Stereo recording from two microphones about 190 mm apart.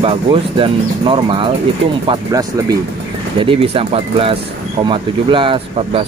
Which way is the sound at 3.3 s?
30° right (ahead or behind).